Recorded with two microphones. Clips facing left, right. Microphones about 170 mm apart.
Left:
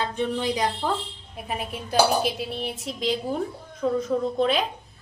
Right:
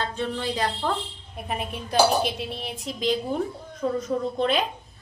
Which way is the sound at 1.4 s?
Centre (ahead or behind).